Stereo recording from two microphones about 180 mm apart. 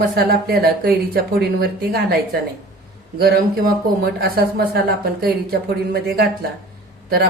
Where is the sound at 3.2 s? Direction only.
55° right (ahead or behind).